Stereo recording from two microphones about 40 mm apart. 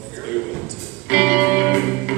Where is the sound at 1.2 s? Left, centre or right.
Centre.